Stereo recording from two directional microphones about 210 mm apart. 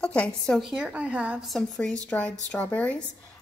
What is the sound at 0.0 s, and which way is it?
Speech, 5° left (ahead or behind).